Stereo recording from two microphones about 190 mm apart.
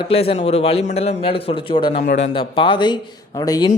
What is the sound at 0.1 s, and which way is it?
A man's voice, 30° left (ahead or behind).